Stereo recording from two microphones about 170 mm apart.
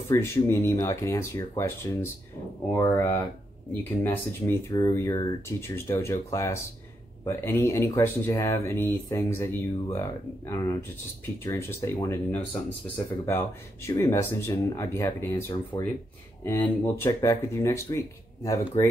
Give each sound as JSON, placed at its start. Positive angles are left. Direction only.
{"t": 0.1, "sound": "speech", "side_deg": 15}